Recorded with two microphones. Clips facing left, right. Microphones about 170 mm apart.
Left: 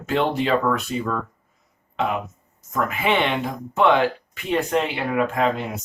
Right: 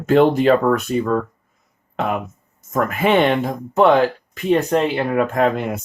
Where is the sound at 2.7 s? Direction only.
50° right (ahead or behind).